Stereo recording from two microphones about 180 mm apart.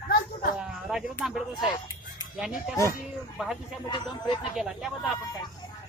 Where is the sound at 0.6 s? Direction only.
5° right (ahead or behind).